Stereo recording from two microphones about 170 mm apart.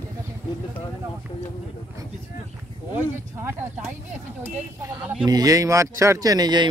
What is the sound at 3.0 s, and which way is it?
Speech, 15° right (ahead or behind).